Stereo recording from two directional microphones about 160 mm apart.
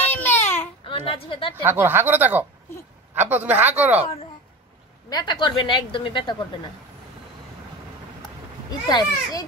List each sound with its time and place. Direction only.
0.1 s baby cry: 15° left (ahead or behind)
0.8 s a woman's voice: 35° left (ahead or behind)
1.5 s speech: 15° right (ahead or behind)
5.1 s a woman's voice: 30° left (ahead or behind)
8.6 s a woman's voice: 25° left (ahead or behind)